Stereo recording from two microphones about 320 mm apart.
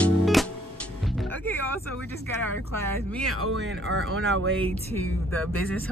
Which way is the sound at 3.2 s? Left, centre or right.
Right.